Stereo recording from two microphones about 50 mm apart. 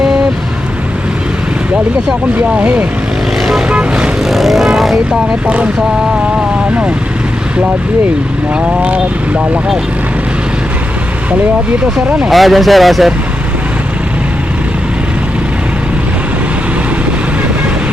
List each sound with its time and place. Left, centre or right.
2.6 s speech: right
3.7 s vehicle: right
4.2 s speech: centre
8.8 s speech: right
12.3 s speech: centre